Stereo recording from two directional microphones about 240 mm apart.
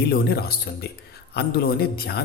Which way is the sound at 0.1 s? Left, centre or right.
Left.